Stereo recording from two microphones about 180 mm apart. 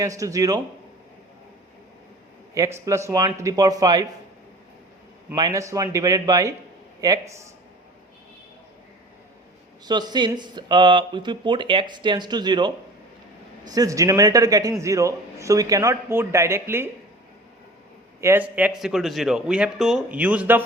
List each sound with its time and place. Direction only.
0.0 s speech: 20° right (ahead or behind)
2.6 s speech: 15° right (ahead or behind)
5.3 s speech: 20° right (ahead or behind)
9.8 s a man's voice: 25° right (ahead or behind)
18.2 s a man's voice: 10° right (ahead or behind)